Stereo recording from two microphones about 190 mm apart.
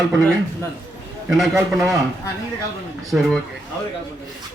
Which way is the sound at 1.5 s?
15° right (ahead or behind).